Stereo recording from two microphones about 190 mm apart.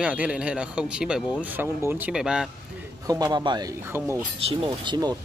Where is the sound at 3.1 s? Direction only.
20° right (ahead or behind).